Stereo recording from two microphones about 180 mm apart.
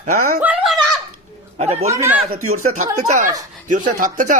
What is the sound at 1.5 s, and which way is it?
Speech, 35° right (ahead or behind).